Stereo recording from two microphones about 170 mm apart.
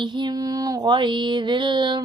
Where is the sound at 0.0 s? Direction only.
25° right (ahead or behind).